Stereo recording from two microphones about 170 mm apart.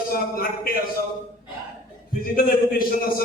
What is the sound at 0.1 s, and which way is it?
Speech, 60° left (ahead or behind).